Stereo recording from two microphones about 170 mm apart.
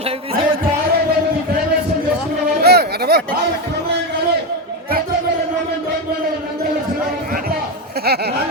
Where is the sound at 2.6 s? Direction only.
70° right (ahead or behind).